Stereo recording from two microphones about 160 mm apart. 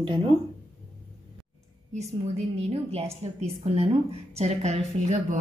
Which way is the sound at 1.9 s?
45° right (ahead or behind).